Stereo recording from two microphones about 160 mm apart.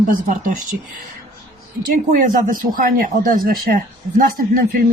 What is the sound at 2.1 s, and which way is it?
Speech, 55° right (ahead or behind).